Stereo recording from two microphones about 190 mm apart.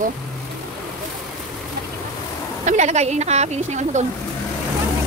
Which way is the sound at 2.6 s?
40° right (ahead or behind).